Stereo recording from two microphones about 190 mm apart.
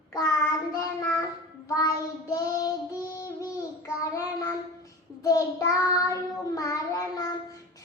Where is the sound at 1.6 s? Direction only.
15° left (ahead or behind).